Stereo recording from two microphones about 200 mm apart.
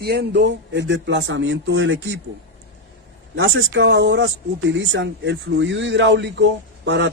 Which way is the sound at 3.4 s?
65° right (ahead or behind).